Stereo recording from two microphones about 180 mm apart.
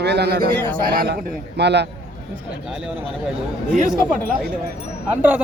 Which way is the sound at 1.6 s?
70° right (ahead or behind).